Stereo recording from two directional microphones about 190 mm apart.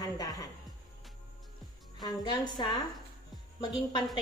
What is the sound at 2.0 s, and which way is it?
A woman's voice, 20° left (ahead or behind).